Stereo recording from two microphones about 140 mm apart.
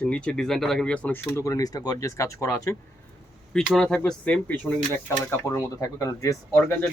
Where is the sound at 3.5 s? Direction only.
5° left (ahead or behind); by 6.7 s 20° left (ahead or behind).